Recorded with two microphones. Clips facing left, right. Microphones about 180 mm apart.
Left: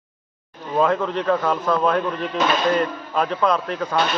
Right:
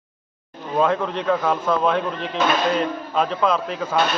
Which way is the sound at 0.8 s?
Centre (ahead or behind).